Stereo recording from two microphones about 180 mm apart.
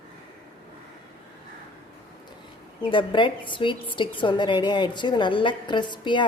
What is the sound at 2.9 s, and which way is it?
A woman's voice, 25° left (ahead or behind).